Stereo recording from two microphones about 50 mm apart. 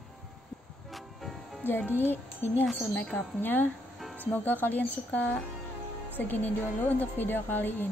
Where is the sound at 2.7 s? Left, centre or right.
Left.